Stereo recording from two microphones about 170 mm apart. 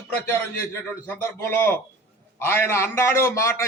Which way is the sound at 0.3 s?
15° left (ahead or behind).